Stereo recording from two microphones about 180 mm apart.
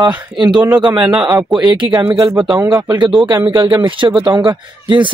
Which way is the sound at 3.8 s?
25° right (ahead or behind).